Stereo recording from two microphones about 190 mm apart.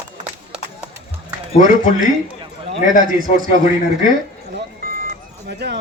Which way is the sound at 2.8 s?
40° left (ahead or behind).